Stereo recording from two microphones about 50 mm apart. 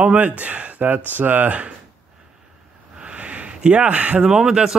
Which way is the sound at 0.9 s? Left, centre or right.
Right.